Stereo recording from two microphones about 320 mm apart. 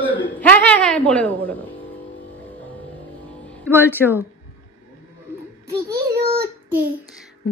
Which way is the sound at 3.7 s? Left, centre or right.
Centre.